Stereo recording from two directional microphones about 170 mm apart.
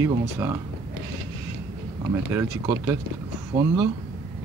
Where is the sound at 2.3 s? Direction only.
15° right (ahead or behind).